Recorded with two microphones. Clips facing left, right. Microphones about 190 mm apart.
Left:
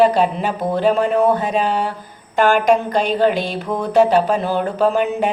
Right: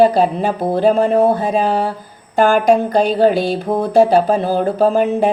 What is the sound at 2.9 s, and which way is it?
Speech, 35° right (ahead or behind).